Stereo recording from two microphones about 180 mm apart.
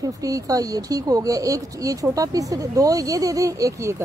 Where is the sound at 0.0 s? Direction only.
20° right (ahead or behind).